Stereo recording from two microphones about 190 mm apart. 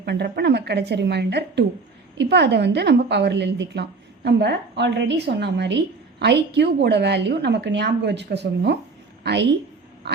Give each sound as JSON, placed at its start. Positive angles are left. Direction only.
{"t": 0.0, "sound": "a woman's voice", "side_deg": -60}